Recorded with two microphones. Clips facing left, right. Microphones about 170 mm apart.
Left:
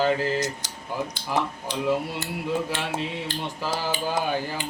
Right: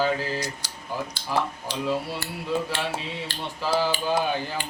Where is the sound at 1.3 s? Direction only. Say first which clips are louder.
Even; 20° left (ahead or behind).